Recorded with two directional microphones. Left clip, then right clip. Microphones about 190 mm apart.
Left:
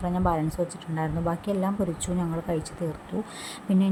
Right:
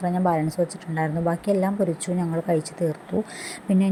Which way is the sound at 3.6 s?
15° right (ahead or behind).